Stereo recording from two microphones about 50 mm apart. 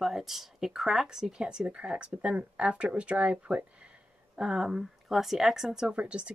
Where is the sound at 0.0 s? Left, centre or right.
Centre; by 3.6 s right.